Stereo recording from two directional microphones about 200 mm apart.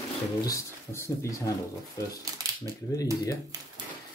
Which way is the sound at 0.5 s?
15° left (ahead or behind).